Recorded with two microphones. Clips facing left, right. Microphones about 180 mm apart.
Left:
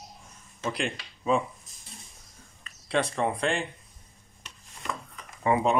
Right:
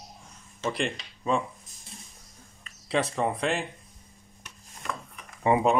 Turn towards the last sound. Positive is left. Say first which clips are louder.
# right 2 dB
turn(degrees=-20)  # may be behind; listen again after turning